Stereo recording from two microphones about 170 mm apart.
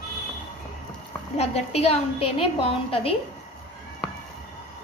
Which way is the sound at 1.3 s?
40° left (ahead or behind).